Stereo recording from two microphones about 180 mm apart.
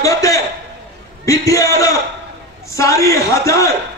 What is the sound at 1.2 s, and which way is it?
A man's voice, 20° left (ahead or behind).